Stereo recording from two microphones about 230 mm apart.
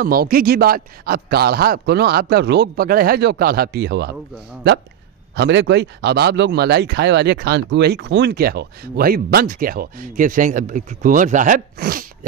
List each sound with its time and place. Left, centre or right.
0.0 s a man's voice: right
5.3 s speech: right